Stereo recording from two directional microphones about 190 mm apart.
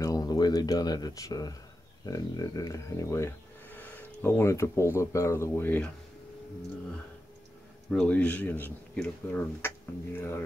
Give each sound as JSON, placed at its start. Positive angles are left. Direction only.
{"t": 0.0, "sound": "speech", "side_deg": 20}
{"t": 7.9, "sound": "speech", "side_deg": 5}